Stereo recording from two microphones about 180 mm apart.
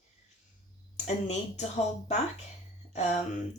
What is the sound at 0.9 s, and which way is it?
Speech, 40° left (ahead or behind).